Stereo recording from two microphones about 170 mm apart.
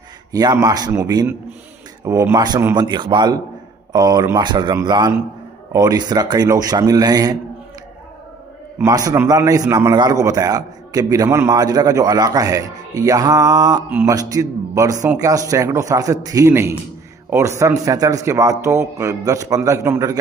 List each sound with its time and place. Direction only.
0.3 s a man's voice: 20° right (ahead or behind)
8.7 s a man's voice: 20° right (ahead or behind)
13.8 s a man's voice: 10° right (ahead or behind)